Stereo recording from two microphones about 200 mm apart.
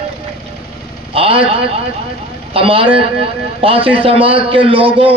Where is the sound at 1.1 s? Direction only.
25° right (ahead or behind).